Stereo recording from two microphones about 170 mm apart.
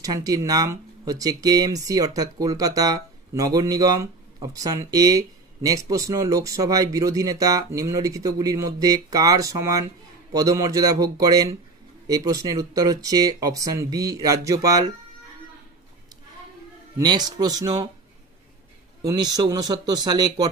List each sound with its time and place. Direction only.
0.0 s speech: 20° right (ahead or behind)
17.0 s speech: 25° right (ahead or behind)
19.0 s speech: 25° right (ahead or behind)